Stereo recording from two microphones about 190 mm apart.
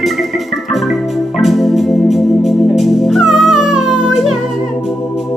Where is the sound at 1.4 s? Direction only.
Centre (ahead or behind).